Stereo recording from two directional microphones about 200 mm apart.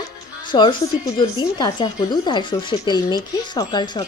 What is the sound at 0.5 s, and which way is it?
Speech, 25° left (ahead or behind).